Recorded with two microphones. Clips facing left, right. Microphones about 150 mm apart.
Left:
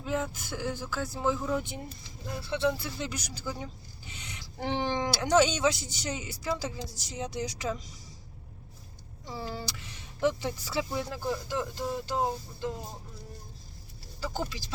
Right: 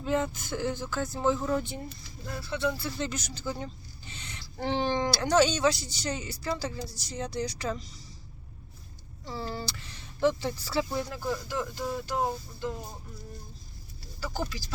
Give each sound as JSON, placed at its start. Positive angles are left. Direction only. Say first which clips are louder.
{"t": 0.0, "sound": "speech", "louder": "right 3 dB", "side_deg": 5}
{"t": 9.2, "sound": "speech", "louder": "right 2 dB", "side_deg": 15}
{"t": 14.2, "sound": "speech", "louder": "even", "side_deg": 25}